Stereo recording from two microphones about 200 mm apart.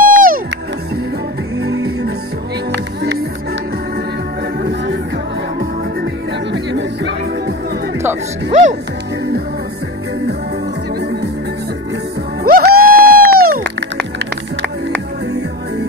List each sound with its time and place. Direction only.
0.0 s music: 45° right (ahead or behind)
1.6 s music: 55° right (ahead or behind)
6.5 s music: 60° right (ahead or behind)
8.5 s music: 35° right (ahead or behind)
12.4 s music: 50° right (ahead or behind)